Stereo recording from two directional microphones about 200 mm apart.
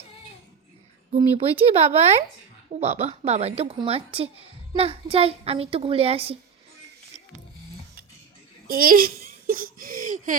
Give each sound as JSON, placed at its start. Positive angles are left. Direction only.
{"t": 1.1, "sound": "a woman's voice", "side_deg": -30}
{"t": 8.6, "sound": "speech", "side_deg": -45}